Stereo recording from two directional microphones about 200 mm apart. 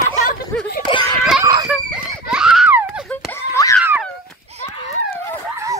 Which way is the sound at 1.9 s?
5° right (ahead or behind).